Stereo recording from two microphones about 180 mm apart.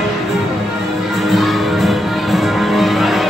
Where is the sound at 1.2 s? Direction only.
Centre (ahead or behind).